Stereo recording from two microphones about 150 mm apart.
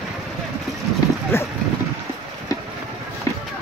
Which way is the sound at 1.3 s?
15° left (ahead or behind).